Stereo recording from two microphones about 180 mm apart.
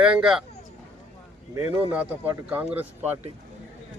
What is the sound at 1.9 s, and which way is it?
Speech, 10° right (ahead or behind).